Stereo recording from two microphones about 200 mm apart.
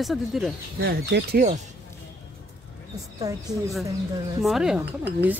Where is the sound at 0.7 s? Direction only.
50° right (ahead or behind).